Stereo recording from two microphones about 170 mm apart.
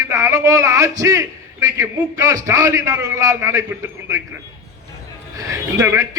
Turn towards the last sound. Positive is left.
turn(degrees=-15)  # may be behind; listen again after turning